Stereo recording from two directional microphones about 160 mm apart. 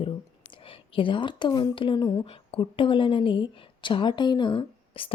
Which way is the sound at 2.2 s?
35° left (ahead or behind).